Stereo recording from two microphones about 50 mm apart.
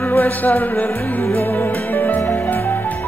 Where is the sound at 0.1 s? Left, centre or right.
Left.